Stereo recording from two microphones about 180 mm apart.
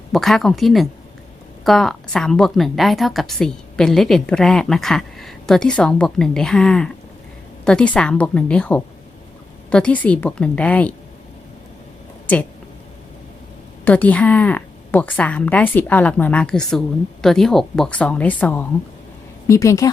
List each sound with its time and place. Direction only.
0.1 s a woman's voice: centre (ahead or behind)
13.8 s a woman's voice: 10° left (ahead or behind)